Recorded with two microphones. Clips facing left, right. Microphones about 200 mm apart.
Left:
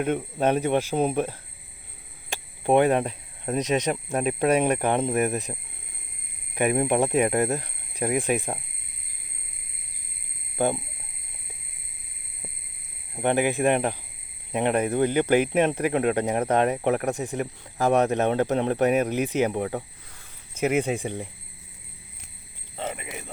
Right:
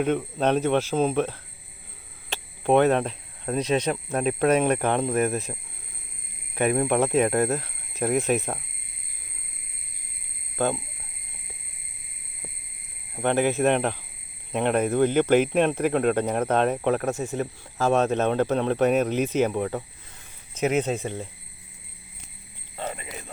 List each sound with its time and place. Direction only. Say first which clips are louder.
0.0 s speech: right 1 dB; 10° left (ahead or behind)
10.6 s speech: left 1 dB; 15° left (ahead or behind)
13.2 s speech: even; 15° left (ahead or behind)
22.8 s a sound: left 1 dB; 20° left (ahead or behind)